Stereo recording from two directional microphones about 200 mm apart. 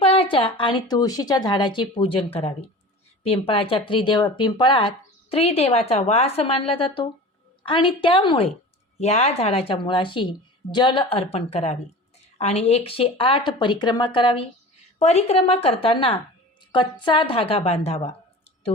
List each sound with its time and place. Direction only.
0.0 s a woman's voice: 30° left (ahead or behind)